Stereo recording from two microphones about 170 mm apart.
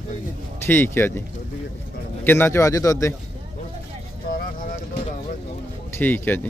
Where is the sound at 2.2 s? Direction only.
10° left (ahead or behind).